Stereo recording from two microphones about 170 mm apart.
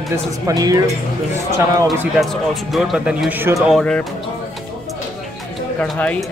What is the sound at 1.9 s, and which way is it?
Speech, centre (ahead or behind).